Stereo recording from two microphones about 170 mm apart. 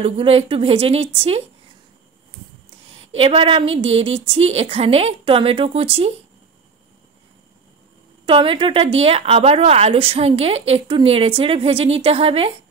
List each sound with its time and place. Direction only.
0.0 s speech: 35° right (ahead or behind)
3.1 s speech: 35° right (ahead or behind)
8.3 s speech: 30° right (ahead or behind)